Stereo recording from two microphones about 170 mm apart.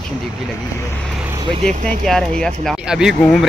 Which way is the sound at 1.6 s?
5° left (ahead or behind).